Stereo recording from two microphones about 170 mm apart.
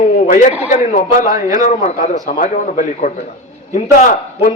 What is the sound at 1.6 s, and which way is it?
A man's voice, 45° left (ahead or behind).